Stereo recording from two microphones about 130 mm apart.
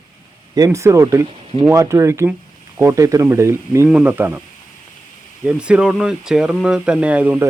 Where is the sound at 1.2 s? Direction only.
45° right (ahead or behind).